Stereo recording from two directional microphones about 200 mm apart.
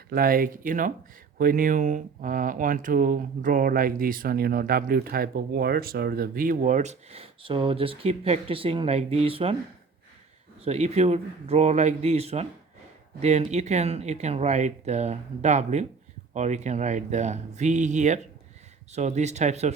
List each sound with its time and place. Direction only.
0.1 s speech: 45° right (ahead or behind); by 9.6 s 30° right (ahead or behind)
10.6 s speech: 30° right (ahead or behind)